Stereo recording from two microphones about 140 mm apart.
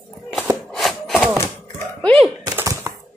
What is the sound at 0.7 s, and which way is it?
Wood, 5° left (ahead or behind).